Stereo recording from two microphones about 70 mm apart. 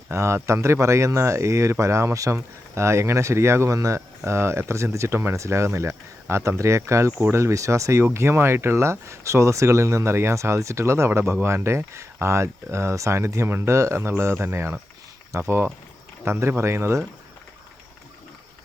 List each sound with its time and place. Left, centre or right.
0.1 s speech: right